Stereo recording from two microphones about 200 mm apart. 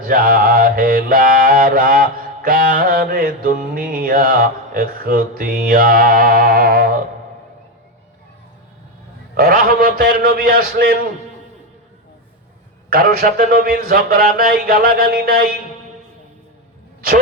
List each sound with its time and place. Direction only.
0.0 s mantra: 45° right (ahead or behind)
9.3 s mantra: 45° right (ahead or behind)
12.9 s mantra: 45° right (ahead or behind)